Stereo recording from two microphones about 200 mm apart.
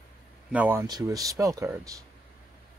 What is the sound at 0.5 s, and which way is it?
Speech, 10° right (ahead or behind).